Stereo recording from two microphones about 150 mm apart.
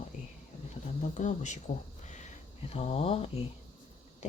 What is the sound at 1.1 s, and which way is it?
Speech, 55° left (ahead or behind).